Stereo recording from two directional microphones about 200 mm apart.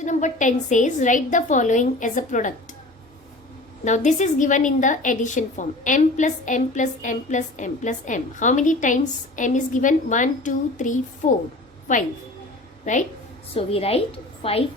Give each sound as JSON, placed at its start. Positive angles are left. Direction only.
{"t": 0.0, "sound": "a woman's voice", "side_deg": 35}
{"t": 3.8, "sound": "a woman's voice", "side_deg": 35}